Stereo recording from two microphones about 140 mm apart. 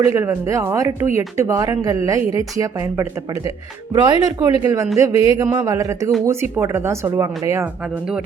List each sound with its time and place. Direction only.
0.0 s speech: 20° right (ahead or behind)
3.9 s speech: 30° right (ahead or behind)